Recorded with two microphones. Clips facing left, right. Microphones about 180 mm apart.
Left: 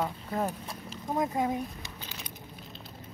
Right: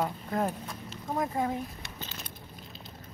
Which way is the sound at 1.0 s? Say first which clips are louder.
Left 1 dB; 20° left (ahead or behind).